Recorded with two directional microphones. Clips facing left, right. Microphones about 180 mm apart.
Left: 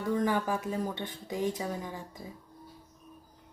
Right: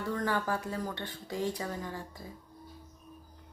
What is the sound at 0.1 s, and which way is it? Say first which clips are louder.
Speech: left 4 dB; 15° left (ahead or behind).